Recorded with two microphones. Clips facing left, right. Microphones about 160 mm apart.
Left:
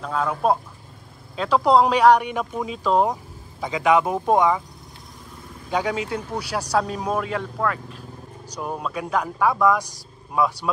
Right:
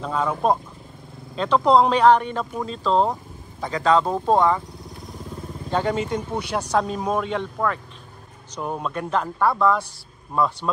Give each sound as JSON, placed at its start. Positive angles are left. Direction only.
{"t": 0.0, "sound": "speech", "side_deg": 0}
{"t": 5.7, "sound": "speech", "side_deg": 10}